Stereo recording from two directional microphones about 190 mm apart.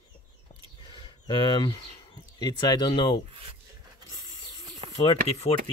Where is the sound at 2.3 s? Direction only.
20° left (ahead or behind).